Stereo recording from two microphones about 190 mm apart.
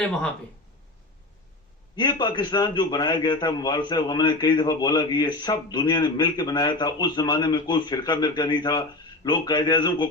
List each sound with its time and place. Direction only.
2.0 s a man's voice: 25° left (ahead or behind)